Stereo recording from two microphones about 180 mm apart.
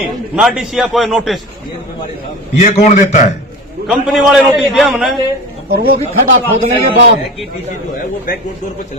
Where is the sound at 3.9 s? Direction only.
5° right (ahead or behind).